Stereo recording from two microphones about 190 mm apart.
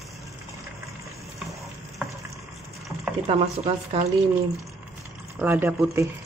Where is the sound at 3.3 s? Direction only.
30° right (ahead or behind).